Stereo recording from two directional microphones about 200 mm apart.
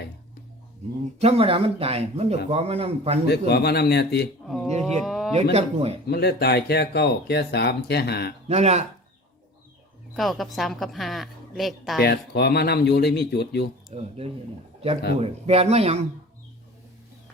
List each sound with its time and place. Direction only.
0.8 s speech: 35° right (ahead or behind)
3.2 s speech: 55° left (ahead or behind)
4.4 s speech: centre (ahead or behind)
5.3 s speech: 30° right (ahead or behind)
6.1 s speech: 55° left (ahead or behind)
8.4 s speech: 30° right (ahead or behind)
10.2 s a woman's voice: centre (ahead or behind)
12.0 s speech: 55° left (ahead or behind)
13.9 s speech: 30° right (ahead or behind)
15.2 s speech: 30° right (ahead or behind)